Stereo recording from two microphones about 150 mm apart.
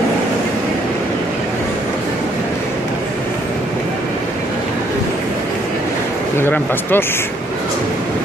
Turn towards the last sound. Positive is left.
turn(degrees=15)  # may be behind; listen again after turning